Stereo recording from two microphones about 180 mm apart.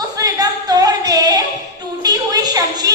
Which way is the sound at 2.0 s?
20° right (ahead or behind).